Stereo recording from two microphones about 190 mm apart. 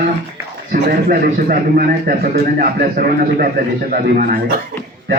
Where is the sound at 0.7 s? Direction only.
50° right (ahead or behind).